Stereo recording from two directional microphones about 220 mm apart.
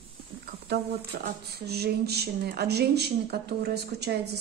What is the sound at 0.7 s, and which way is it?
Speech, 50° right (ahead or behind).